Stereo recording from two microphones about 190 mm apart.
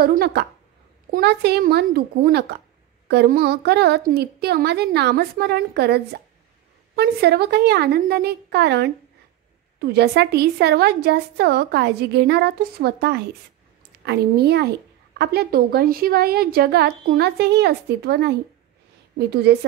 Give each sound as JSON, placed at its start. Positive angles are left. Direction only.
{"t": 0.0, "sound": "a woman's voice", "side_deg": -55}